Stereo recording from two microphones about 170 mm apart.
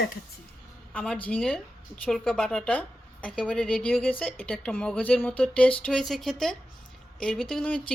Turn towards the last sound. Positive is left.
turn(degrees=5)  # may be behind; listen again after turning